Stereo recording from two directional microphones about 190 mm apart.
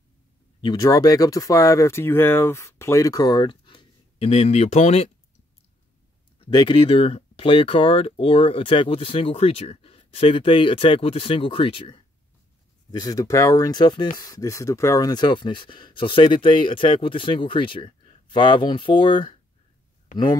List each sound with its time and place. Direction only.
0.6 s speech: 20° left (ahead or behind)
6.4 s speech: 25° left (ahead or behind)